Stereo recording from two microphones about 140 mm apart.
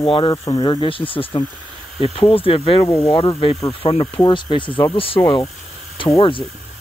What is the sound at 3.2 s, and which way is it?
Speech, 40° left (ahead or behind).